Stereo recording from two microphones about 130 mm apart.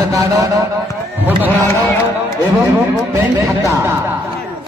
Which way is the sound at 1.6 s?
15° left (ahead or behind).